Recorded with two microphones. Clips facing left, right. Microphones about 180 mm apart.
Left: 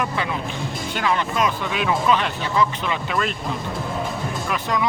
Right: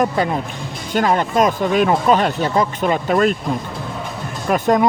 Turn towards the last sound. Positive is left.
turn(degrees=-50)  # may be behind; listen again after turning